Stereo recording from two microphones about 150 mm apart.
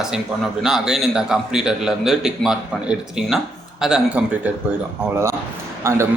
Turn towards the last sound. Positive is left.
turn(degrees=-20)  # may be behind; listen again after turning